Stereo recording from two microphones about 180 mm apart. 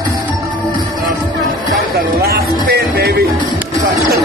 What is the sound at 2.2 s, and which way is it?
Music, 60° right (ahead or behind).